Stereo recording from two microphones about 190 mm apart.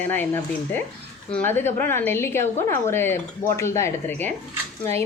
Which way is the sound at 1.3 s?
10° left (ahead or behind).